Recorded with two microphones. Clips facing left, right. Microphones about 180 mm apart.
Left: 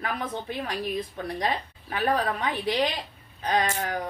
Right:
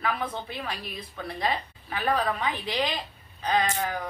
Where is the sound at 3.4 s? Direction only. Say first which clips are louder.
Even; 45° left (ahead or behind).